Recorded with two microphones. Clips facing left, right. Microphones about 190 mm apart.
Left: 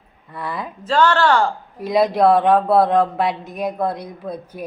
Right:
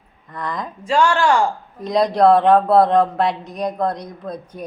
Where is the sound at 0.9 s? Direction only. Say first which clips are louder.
Even; 10° right (ahead or behind).